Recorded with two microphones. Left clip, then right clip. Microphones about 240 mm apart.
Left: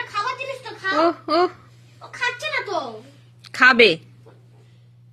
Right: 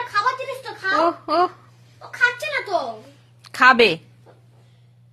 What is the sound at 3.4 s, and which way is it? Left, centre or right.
Speech, centre.